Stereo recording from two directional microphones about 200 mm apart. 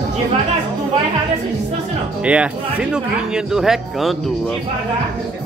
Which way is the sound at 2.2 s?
5° right (ahead or behind).